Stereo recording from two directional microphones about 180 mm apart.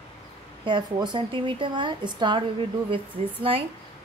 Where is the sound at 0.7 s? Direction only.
25° right (ahead or behind).